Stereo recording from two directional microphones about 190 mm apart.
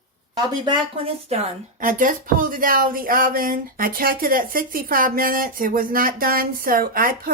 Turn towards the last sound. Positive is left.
turn(degrees=-50)  # may be behind; listen again after turning